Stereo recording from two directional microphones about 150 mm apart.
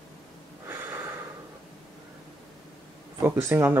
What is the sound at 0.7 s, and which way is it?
Snort, 15° right (ahead or behind).